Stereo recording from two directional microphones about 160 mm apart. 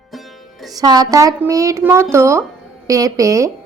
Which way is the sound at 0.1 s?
Centre (ahead or behind).